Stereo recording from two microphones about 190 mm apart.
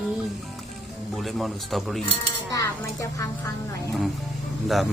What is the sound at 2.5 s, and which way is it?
Speech, 15° left (ahead or behind).